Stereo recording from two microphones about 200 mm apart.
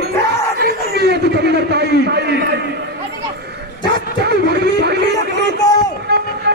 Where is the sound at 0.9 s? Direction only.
55° right (ahead or behind).